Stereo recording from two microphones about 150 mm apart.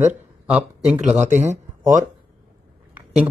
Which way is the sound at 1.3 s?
50° right (ahead or behind).